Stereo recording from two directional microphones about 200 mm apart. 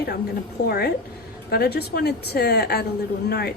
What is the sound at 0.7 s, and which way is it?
A woman's voice, 55° left (ahead or behind).